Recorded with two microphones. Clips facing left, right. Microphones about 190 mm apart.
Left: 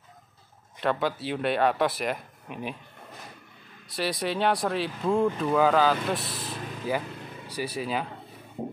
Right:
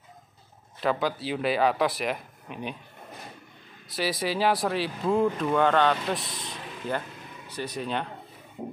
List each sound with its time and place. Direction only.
0.7 s speech: centre (ahead or behind)
3.9 s speech: centre (ahead or behind)